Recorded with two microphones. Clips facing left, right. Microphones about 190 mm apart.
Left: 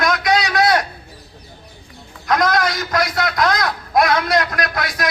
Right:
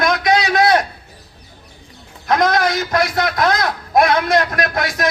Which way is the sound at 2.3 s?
25° right (ahead or behind).